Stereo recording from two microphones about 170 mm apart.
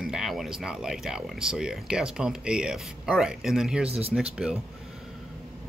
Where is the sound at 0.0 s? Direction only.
Centre (ahead or behind).